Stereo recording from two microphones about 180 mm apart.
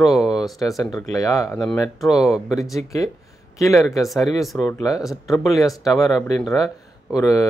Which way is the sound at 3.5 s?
20° left (ahead or behind).